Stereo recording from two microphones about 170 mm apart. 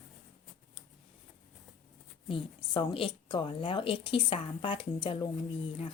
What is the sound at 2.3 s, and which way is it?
Speech, 30° left (ahead or behind).